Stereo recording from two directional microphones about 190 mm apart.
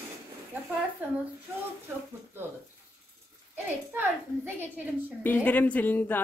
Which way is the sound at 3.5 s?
10° right (ahead or behind).